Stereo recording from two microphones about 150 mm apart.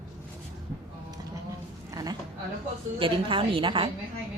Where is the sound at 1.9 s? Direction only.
25° right (ahead or behind).